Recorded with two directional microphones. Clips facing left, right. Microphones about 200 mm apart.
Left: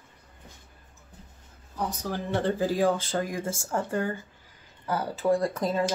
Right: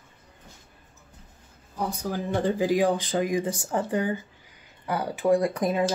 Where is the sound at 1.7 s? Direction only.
10° right (ahead or behind).